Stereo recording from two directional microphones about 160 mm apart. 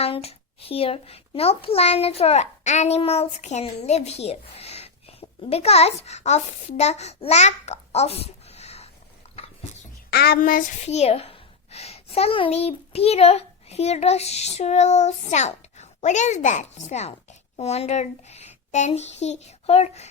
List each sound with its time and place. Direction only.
0.0 s a child's voice: 40° left (ahead or behind)
9.2 s a sound: 40° left (ahead or behind)
10.1 s speech: 75° left (ahead or behind); by 10.6 s 60° left (ahead or behind)
10.8 s a child's voice: 40° left (ahead or behind)